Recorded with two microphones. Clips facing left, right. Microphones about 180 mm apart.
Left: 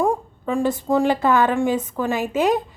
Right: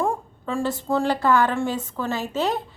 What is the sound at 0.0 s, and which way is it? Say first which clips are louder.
A woman's voice: left 4 dB; 15° left (ahead or behind).